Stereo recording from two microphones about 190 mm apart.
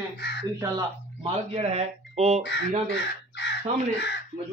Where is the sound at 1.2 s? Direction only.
30° right (ahead or behind).